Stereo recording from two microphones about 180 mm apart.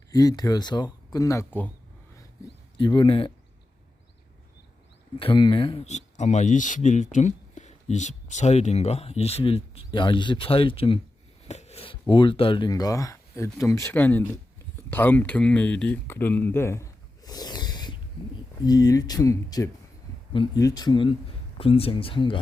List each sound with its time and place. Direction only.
0.1 s speech: 20° left (ahead or behind)
2.7 s speech: 25° left (ahead or behind)
5.2 s speech: 25° left (ahead or behind)